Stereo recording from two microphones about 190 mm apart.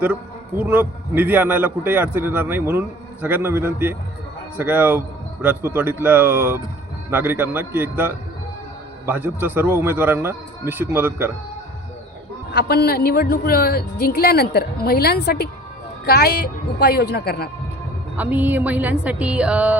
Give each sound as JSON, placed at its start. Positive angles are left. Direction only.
{"t": 0.0, "sound": "a man's voice", "side_deg": -10}
{"t": 12.5, "sound": "a woman's voice", "side_deg": 60}
{"t": 18.2, "sound": "a man's voice", "side_deg": -10}